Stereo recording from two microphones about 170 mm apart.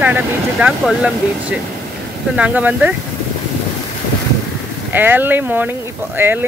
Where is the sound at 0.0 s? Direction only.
10° right (ahead or behind).